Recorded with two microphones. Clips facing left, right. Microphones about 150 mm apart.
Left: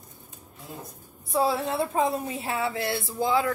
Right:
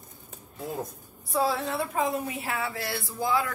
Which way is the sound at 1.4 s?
25° left (ahead or behind).